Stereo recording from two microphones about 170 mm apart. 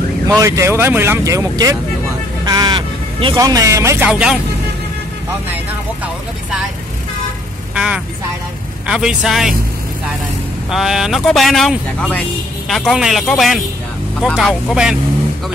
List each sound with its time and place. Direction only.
0.4 s speech: 15° right (ahead or behind)
2.4 s vehicle: 25° right (ahead or behind)
3.3 s speech: 20° right (ahead or behind)
4.1 s speech: 5° right (ahead or behind)
7.7 s vehicle: 5° right (ahead or behind)
8.8 s speech: 5° right (ahead or behind)
10.7 s speech: centre (ahead or behind)